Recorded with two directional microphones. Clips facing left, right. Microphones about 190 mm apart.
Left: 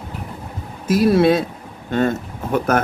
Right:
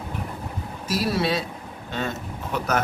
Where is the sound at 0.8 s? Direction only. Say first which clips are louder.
Left 10 dB; 50° left (ahead or behind).